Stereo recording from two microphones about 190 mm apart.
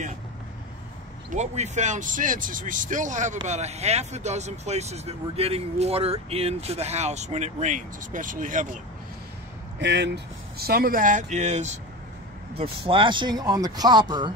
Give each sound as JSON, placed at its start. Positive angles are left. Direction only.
{"t": 1.3, "sound": "speech", "side_deg": -35}
{"t": 9.8, "sound": "speech", "side_deg": -65}
{"t": 12.5, "sound": "speech", "side_deg": -25}